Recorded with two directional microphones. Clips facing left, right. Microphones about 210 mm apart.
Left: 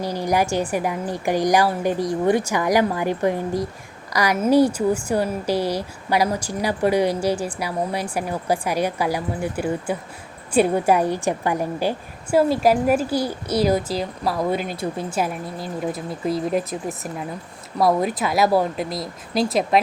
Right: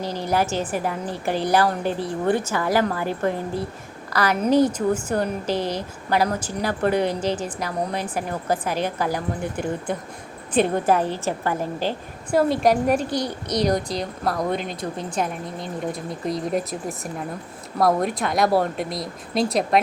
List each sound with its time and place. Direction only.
0.0 s a woman's voice: 10° left (ahead or behind)